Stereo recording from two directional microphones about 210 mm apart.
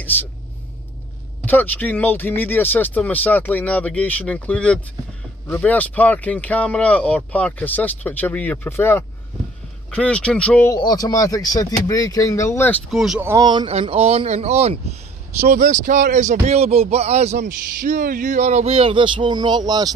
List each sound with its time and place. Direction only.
1.4 s speech: 10° left (ahead or behind)
13.3 s speech: 20° right (ahead or behind)